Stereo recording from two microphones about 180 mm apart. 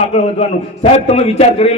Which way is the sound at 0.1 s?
35° left (ahead or behind).